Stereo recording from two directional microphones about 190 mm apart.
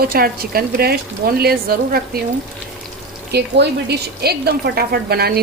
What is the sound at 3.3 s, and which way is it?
A woman's voice, 60° right (ahead or behind).